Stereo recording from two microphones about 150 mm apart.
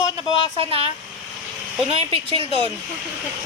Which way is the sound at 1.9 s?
35° right (ahead or behind).